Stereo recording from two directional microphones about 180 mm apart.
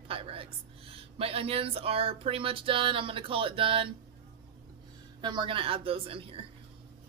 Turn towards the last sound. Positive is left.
turn(degrees=-30)  # may be behind; listen again after turning